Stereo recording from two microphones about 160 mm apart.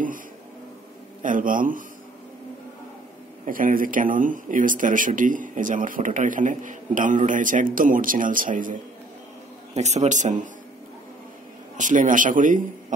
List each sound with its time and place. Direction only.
1.2 s speech: 55° right (ahead or behind)
3.4 s speech: 60° right (ahead or behind)
9.8 s a man's voice: 45° right (ahead or behind)
11.7 s a man's voice: 50° right (ahead or behind)